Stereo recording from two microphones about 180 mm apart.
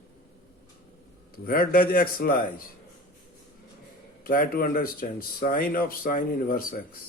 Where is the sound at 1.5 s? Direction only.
50° left (ahead or behind).